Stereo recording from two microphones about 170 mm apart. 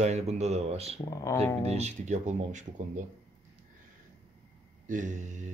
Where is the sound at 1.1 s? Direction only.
15° left (ahead or behind).